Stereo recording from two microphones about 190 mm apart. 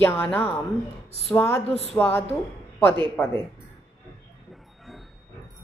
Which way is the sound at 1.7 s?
35° left (ahead or behind).